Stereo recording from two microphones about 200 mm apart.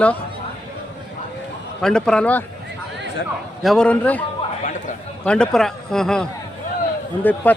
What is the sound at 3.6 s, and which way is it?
Speech, centre (ahead or behind).